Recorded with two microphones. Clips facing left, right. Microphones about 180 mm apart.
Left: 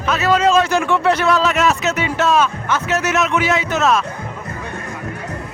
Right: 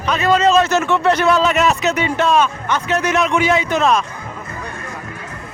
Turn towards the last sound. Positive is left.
turn(degrees=5)  # may be behind; listen again after turning